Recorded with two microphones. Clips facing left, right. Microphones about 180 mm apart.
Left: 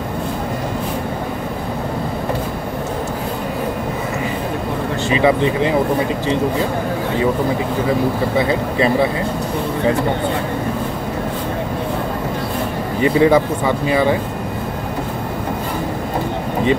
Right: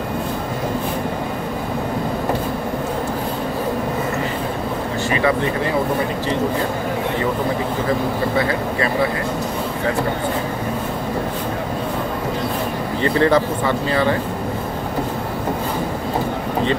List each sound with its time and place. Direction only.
5.1 s speech: 20° left (ahead or behind)
8.5 s speech: 20° left (ahead or behind)
13.0 s speech: 10° left (ahead or behind)